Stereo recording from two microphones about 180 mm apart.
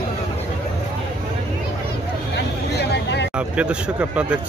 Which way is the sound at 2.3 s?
70° left (ahead or behind).